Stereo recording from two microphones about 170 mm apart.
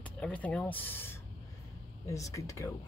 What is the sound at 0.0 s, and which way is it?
Speech, 10° left (ahead or behind).